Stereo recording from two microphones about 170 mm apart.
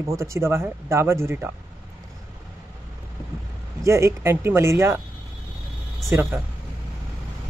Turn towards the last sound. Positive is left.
turn(degrees=-15)  # may be behind; listen again after turning